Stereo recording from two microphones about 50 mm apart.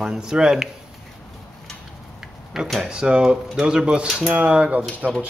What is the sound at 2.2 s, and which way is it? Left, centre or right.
Speech, centre.